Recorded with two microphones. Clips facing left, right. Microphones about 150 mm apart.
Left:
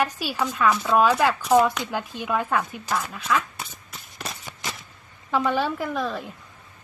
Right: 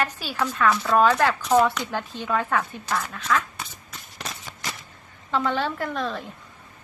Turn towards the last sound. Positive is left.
turn(degrees=5)  # may be behind; listen again after turning